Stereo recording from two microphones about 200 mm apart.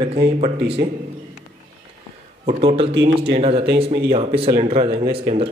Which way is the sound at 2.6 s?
30° right (ahead or behind).